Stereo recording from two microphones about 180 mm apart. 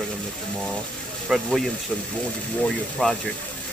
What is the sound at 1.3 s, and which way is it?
Speech, centre (ahead or behind).